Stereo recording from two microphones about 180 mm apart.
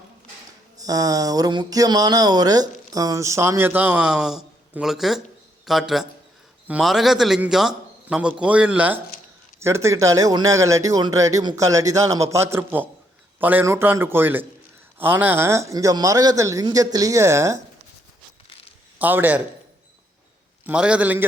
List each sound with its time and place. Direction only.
0.8 s a man's voice: 20° right (ahead or behind)
18.9 s a man's voice: 10° right (ahead or behind)
20.7 s a man's voice: 5° right (ahead or behind)